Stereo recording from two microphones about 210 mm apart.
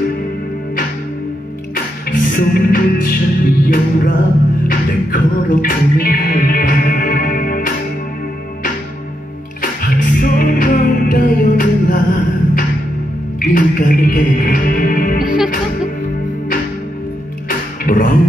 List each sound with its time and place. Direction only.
2.0 s music: 45° left (ahead or behind)
9.6 s music: 40° left (ahead or behind)
13.4 s music: 45° left (ahead or behind)
17.5 s music: 40° left (ahead or behind)